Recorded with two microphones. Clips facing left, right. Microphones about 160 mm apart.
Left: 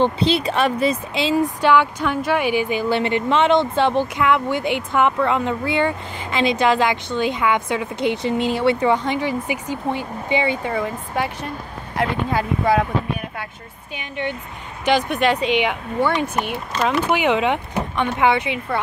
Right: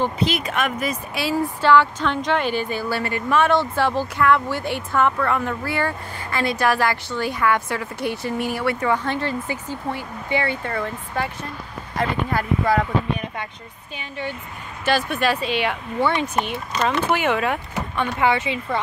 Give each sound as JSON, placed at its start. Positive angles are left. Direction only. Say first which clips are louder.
{"t": 0.0, "sound": "speech", "louder": "left 4 dB", "side_deg": 30}
{"t": 13.9, "sound": "speech", "louder": "left 3 dB", "side_deg": 15}